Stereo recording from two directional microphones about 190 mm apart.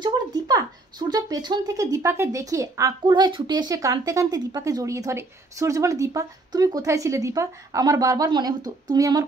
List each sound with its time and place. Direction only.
0.0 s speech: 20° right (ahead or behind)